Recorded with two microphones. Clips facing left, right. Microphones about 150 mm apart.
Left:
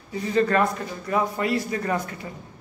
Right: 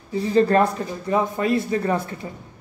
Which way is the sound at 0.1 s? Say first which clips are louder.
Right 4 dB; 30° right (ahead or behind).